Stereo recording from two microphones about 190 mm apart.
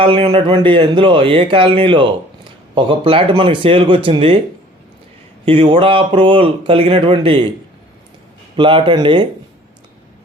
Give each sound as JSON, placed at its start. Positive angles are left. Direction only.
{"t": 0.0, "sound": "speech", "side_deg": -30}
{"t": 5.5, "sound": "speech", "side_deg": -30}
{"t": 8.5, "sound": "speech", "side_deg": -25}